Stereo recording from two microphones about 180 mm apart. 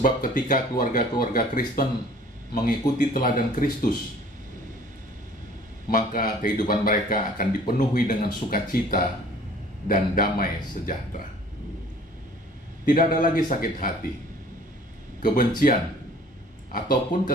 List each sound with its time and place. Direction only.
0.0 s a man's voice: 50° left (ahead or behind)
5.9 s a man's voice: 50° left (ahead or behind)
12.8 s a man's voice: 50° left (ahead or behind)
15.6 s a man's voice: 55° left (ahead or behind)